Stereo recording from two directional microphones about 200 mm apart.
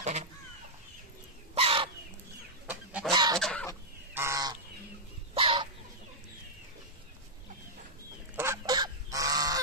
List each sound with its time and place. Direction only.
0.0 s fowl: 35° right (ahead or behind)
1.5 s chicken: 30° right (ahead or behind)
2.6 s fowl: 5° right (ahead or behind)
3.1 s goose: 20° right (ahead or behind)
3.3 s fowl: 5° left (ahead or behind)
4.1 s goose: 15° right (ahead or behind)
5.3 s chicken: 30° right (ahead or behind)
8.4 s goose: 15° right (ahead or behind)